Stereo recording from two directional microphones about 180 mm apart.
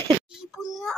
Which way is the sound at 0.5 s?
Centre (ahead or behind).